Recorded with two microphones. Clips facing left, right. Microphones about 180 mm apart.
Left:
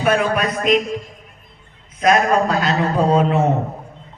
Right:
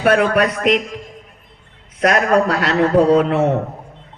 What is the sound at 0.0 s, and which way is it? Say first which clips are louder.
Speech: right 3 dB; 70° right (ahead or behind).